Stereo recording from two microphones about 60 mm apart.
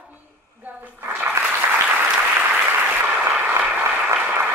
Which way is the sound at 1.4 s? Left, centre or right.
Right.